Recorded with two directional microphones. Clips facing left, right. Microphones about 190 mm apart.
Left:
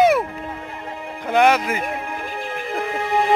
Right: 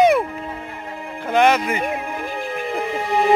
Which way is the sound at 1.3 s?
10° left (ahead or behind).